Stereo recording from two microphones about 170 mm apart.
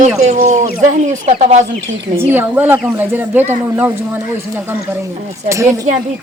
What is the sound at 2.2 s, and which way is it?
Speech, 10° right (ahead or behind).